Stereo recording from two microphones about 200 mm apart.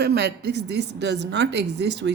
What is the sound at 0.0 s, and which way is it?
Speech, 55° right (ahead or behind).